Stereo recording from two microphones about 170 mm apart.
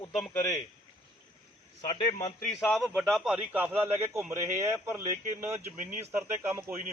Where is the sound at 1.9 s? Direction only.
30° left (ahead or behind).